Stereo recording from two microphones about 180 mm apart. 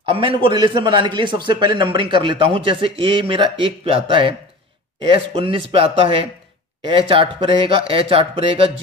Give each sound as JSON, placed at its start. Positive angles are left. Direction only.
{"t": 0.4, "sound": "speech", "side_deg": -25}